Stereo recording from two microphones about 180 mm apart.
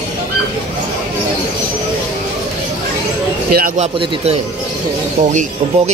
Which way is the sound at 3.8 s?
35° right (ahead or behind).